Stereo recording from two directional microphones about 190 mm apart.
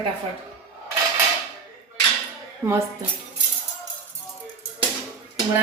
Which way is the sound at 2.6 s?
20° right (ahead or behind).